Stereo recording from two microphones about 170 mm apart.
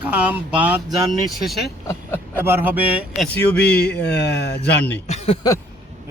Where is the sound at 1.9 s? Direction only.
10° left (ahead or behind).